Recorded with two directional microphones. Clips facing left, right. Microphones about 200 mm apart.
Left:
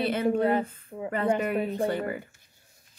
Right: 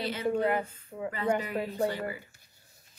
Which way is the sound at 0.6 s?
55° left (ahead or behind).